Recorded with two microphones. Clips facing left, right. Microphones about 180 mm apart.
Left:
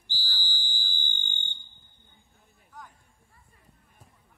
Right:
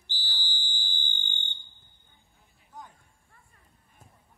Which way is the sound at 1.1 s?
15° left (ahead or behind).